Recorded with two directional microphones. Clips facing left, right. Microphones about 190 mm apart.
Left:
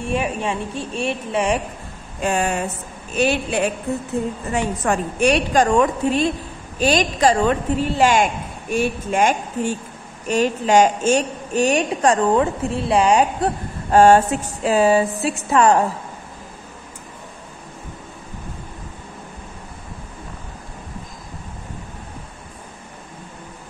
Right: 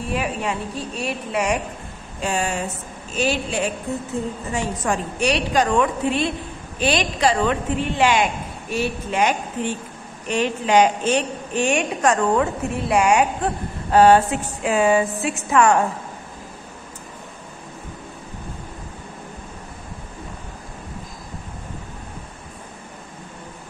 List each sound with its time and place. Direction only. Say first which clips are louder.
0.1 s a woman's voice: left 2 dB; 25° left (ahead or behind)
2.2 s a woman's voice: left 3 dB; 55° left (ahead or behind); by 13.5 s 35° left (ahead or behind)
13.9 s a woman's voice: left 1 dB; 45° left (ahead or behind)